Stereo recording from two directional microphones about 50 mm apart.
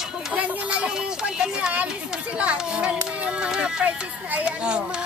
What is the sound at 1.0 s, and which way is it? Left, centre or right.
Speech, centre.